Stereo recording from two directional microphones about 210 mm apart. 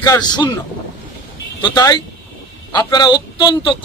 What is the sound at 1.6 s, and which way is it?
A man's voice, 20° left (ahead or behind).